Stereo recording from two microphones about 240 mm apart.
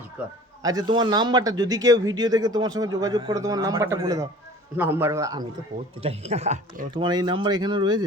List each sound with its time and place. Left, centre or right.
0.2 s a man's voice: centre
6.0 s speech: right